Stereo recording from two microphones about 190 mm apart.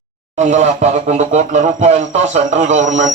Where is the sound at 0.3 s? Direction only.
40° right (ahead or behind).